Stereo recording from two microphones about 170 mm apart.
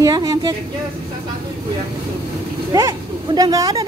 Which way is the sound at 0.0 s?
20° right (ahead or behind).